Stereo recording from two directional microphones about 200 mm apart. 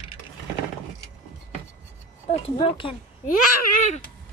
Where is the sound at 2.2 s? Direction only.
30° left (ahead or behind).